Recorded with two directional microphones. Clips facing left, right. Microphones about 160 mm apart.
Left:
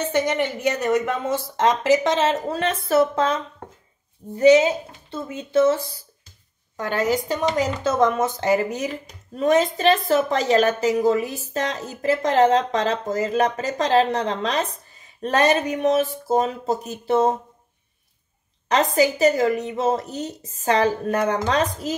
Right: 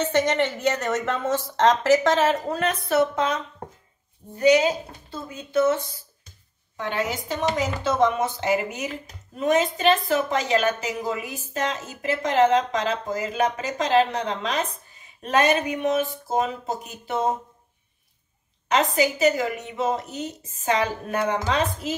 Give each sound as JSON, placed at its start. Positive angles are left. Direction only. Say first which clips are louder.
{"t": 0.0, "sound": "a woman's voice", "louder": "even", "side_deg": 10}
{"t": 4.4, "sound": "speech", "louder": "left 4 dB", "side_deg": 25}
{"t": 6.8, "sound": "a woman's voice", "louder": "left 5 dB", "side_deg": 40}
{"t": 18.7, "sound": "a woman's voice", "louder": "left 3 dB", "side_deg": 40}